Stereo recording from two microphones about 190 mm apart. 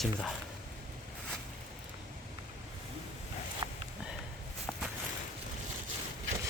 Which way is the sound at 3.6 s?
20° right (ahead or behind).